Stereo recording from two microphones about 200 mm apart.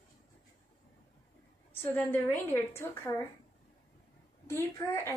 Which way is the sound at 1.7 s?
10° left (ahead or behind).